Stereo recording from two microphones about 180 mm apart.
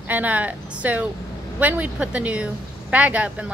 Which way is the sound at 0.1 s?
10° right (ahead or behind).